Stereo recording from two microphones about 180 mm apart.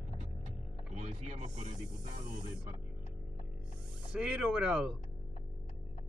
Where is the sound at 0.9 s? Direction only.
40° right (ahead or behind).